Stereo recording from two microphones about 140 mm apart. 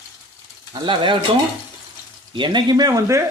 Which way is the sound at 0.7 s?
35° right (ahead or behind).